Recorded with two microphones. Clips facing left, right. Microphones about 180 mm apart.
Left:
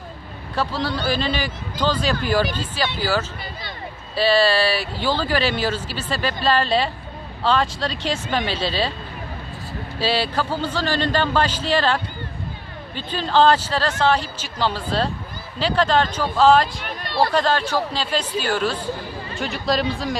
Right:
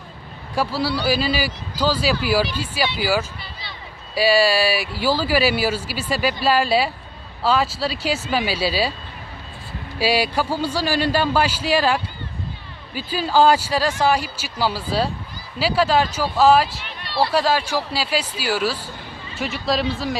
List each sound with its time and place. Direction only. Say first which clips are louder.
0.6 s speech: right 2 dB; 10° right (ahead or behind)
9.9 s speech: right 2 dB; 10° right (ahead or behind)
16.8 s speech: left 1 dB; 45° left (ahead or behind)
17.3 s speech: even; 5° right (ahead or behind)